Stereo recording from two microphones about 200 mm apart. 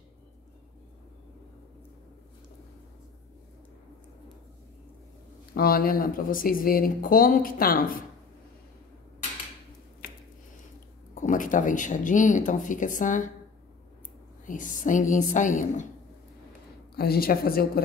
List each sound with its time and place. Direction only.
5.5 s speech: 50° left (ahead or behind)
11.1 s speech: 40° left (ahead or behind)
14.4 s speech: 40° left (ahead or behind)
16.9 s speech: 50° left (ahead or behind)